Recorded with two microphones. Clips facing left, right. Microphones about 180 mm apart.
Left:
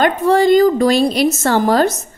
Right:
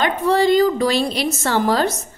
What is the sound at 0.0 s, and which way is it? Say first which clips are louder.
A woman's voice: left 4 dB; 45° left (ahead or behind).